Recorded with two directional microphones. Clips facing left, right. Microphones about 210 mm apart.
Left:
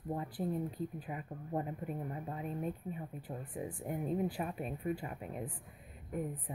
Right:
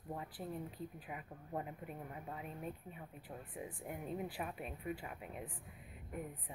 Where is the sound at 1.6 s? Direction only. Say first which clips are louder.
Left 7 dB; 40° left (ahead or behind).